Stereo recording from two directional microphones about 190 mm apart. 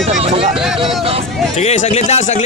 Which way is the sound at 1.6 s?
35° left (ahead or behind).